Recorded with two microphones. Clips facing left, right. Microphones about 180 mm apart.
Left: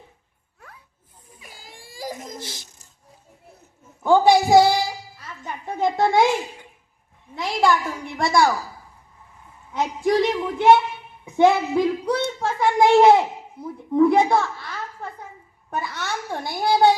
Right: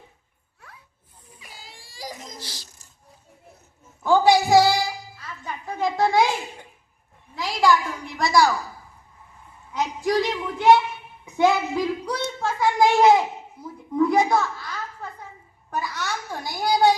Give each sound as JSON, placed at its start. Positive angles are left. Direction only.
{"t": 1.4, "sound": "baby cry", "side_deg": 50}
{"t": 2.4, "sound": "a child's voice", "side_deg": 20}
{"t": 4.0, "sound": "speech", "side_deg": 25}
{"t": 5.4, "sound": "a sound", "side_deg": 20}
{"t": 7.3, "sound": "a sound", "side_deg": 25}
{"t": 8.2, "sound": "a child's voice", "side_deg": 25}
{"t": 9.7, "sound": "a child's voice", "side_deg": 25}
{"t": 15.7, "sound": "a sound", "side_deg": 25}
{"t": 16.5, "sound": "a child's voice", "side_deg": 25}